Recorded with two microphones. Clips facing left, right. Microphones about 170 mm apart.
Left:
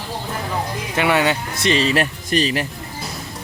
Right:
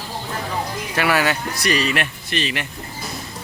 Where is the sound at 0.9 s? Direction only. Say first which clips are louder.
Left 2 dB; 25° left (ahead or behind).